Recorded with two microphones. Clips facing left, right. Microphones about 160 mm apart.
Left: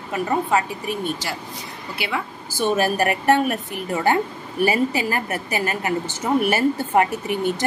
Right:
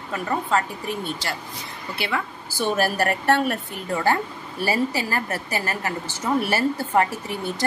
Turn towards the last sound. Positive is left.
turn(degrees=15)  # may be behind; listen again after turning